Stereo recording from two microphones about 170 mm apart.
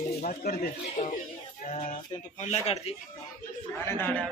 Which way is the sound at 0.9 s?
45° left (ahead or behind).